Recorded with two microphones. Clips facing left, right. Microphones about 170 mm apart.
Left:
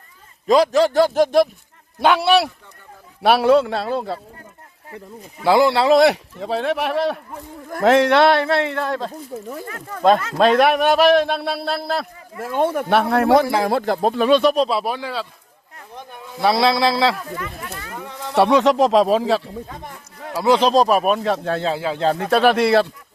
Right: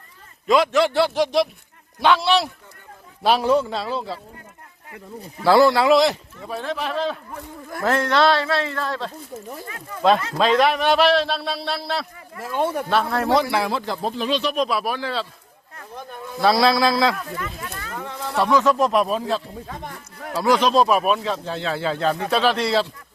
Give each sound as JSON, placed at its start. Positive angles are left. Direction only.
{"t": 0.4, "sound": "a man's voice", "side_deg": 35}
{"t": 2.0, "sound": "a man's voice", "side_deg": 60}
{"t": 5.4, "sound": "a man's voice", "side_deg": 20}
{"t": 6.0, "sound": "speech", "side_deg": 80}
{"t": 8.4, "sound": "a man's voice", "side_deg": 20}
{"t": 8.8, "sound": "a man's voice", "side_deg": 55}
{"t": 12.7, "sound": "a man's voice", "side_deg": 60}
{"t": 14.5, "sound": "a man's voice", "side_deg": 30}
{"t": 18.6, "sound": "speech", "side_deg": 90}
{"t": 20.3, "sound": "a man's voice", "side_deg": 20}
{"t": 21.2, "sound": "a man's voice", "side_deg": 60}
{"t": 21.9, "sound": "speech", "side_deg": 10}
{"t": 22.3, "sound": "a man's voice", "side_deg": 55}